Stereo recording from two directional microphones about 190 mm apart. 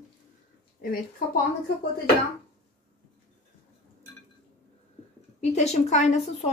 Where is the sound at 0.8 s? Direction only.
50° left (ahead or behind).